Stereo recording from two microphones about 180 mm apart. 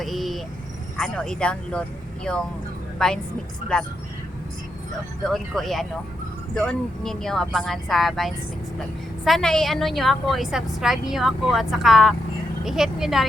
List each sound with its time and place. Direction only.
0.0 s vehicle: centre (ahead or behind)
0.9 s speech: 5° left (ahead or behind)
5.2 s speech: centre (ahead or behind)